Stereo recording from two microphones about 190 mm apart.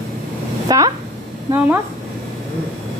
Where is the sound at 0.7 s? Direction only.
20° right (ahead or behind).